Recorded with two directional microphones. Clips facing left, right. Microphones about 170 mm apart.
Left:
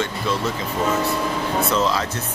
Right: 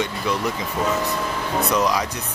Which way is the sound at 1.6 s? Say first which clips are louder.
Right 2 dB; 15° right (ahead or behind).